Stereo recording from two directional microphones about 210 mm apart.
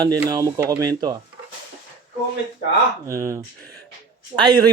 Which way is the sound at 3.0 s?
15° right (ahead or behind).